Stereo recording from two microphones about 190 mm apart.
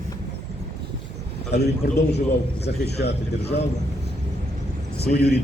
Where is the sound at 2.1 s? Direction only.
60° left (ahead or behind).